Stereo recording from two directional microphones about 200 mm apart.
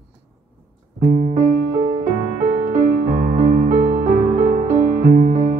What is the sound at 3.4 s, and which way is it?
Music, 40° right (ahead or behind).